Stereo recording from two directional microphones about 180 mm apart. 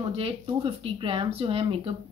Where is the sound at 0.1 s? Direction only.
30° right (ahead or behind).